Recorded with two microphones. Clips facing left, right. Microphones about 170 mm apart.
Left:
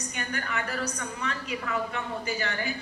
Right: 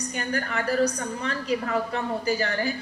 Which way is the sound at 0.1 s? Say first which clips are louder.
Right 4 dB; 35° right (ahead or behind).